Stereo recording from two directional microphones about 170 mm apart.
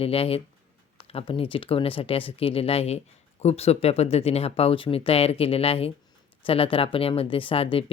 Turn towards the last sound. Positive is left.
turn(degrees=35)  # may be behind; listen again after turning